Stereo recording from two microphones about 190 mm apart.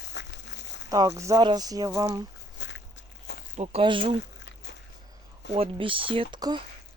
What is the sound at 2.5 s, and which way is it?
Walk, 70° left (ahead or behind).